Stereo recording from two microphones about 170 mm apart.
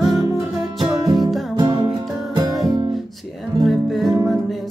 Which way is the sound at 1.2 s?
Centre (ahead or behind).